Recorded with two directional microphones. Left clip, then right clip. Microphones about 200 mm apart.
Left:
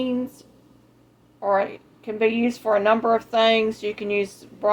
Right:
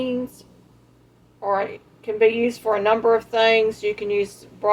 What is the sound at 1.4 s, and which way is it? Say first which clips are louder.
A woman's voice: left 1 dB; 25° left (ahead or behind).